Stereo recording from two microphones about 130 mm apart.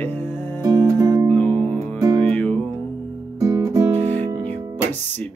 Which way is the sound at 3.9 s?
60° right (ahead or behind).